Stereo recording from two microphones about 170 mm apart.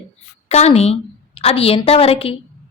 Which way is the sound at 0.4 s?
40° left (ahead or behind).